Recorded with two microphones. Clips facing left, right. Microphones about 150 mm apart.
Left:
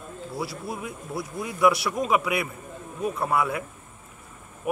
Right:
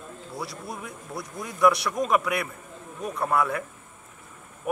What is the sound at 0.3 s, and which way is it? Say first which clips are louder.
Speech: left 3 dB; 5° left (ahead or behind).